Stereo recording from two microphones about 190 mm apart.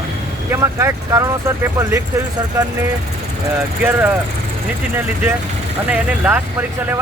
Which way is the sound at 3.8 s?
10° right (ahead or behind).